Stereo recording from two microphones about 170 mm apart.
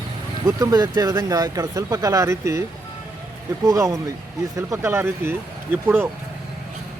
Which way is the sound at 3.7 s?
20° right (ahead or behind).